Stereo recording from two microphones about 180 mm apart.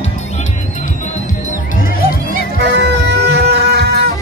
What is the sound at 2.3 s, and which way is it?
Music, 70° right (ahead or behind).